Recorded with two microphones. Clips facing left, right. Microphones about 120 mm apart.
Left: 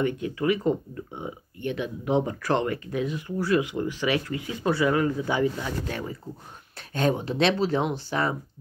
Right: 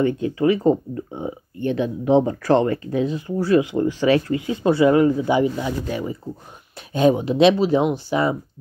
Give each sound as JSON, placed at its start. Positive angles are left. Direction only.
{"t": 0.0, "sound": "speech", "side_deg": -30}
{"t": 6.9, "sound": "speech", "side_deg": -15}